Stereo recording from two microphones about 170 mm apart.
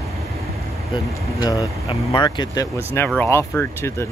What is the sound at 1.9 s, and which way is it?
Speech, 30° left (ahead or behind).